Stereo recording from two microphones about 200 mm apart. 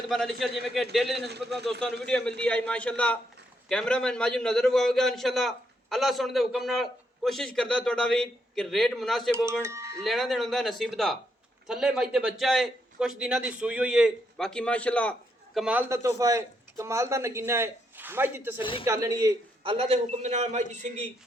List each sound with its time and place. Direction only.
0.1 s a man's voice: centre (ahead or behind)
9.5 s speech: 15° right (ahead or behind)
10.0 s a man's voice: centre (ahead or behind)
15.5 s a man's voice: 5° right (ahead or behind)
18.6 s speech: 25° left (ahead or behind)
18.9 s a man's voice: 15° right (ahead or behind)
19.7 s a man's voice: 30° right (ahead or behind)